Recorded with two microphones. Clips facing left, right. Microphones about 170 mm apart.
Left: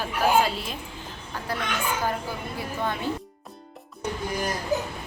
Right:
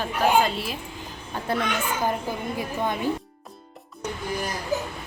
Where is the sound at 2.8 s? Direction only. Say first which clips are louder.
Right 2 dB; 15° right (ahead or behind).